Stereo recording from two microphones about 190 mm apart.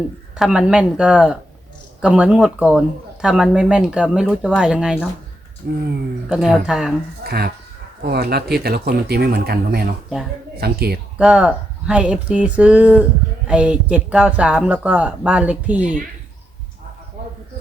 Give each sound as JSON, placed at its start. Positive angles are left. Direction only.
{"t": 0.3, "sound": "speech", "side_deg": -5}
{"t": 5.6, "sound": "speech", "side_deg": -55}
{"t": 6.2, "sound": "speech", "side_deg": 0}
{"t": 7.3, "sound": "speech", "side_deg": -55}
{"t": 11.2, "sound": "speech", "side_deg": -5}